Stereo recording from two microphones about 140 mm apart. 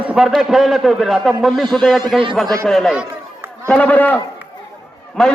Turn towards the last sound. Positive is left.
turn(degrees=5)  # may be behind; listen again after turning